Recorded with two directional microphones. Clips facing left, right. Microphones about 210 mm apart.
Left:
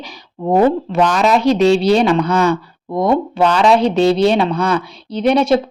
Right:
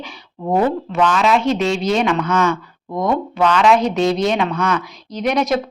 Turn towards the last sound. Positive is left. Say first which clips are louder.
# left 5 dB
turn(degrees=30)  # may be behind; listen again after turning